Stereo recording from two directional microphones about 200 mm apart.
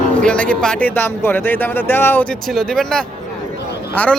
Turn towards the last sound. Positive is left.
turn(degrees=10)  # may be behind; listen again after turning